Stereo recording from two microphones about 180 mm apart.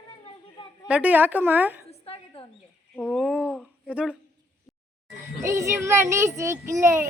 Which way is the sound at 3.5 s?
5° right (ahead or behind).